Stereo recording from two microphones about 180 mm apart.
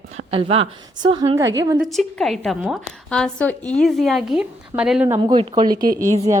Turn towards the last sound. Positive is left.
turn(degrees=-50)  # may be behind; listen again after turning